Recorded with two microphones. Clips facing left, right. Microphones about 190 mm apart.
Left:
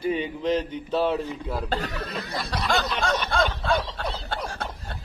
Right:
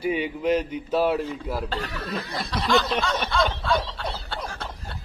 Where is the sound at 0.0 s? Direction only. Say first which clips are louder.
Right 1 dB; 10° right (ahead or behind).